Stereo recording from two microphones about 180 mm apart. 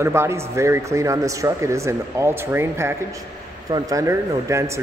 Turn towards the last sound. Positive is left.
turn(degrees=-15)  # may be behind; listen again after turning